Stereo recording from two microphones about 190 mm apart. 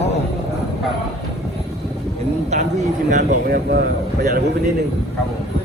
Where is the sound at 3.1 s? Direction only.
50° right (ahead or behind).